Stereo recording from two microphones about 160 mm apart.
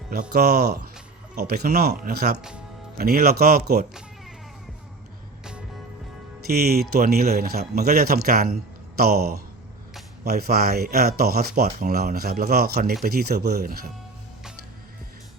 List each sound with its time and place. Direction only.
0.1 s speech: 80° right
6.5 s speech: 75° right (ahead or behind)